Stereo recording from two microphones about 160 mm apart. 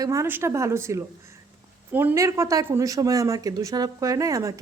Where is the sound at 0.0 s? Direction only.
20° right (ahead or behind).